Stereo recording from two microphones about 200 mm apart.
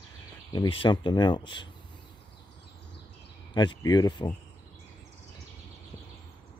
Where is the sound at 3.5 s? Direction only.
20° left (ahead or behind).